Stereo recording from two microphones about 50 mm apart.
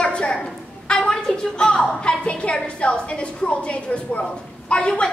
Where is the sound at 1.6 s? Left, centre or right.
Centre.